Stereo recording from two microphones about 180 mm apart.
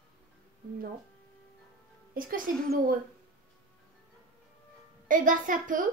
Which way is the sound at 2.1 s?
50° right (ahead or behind).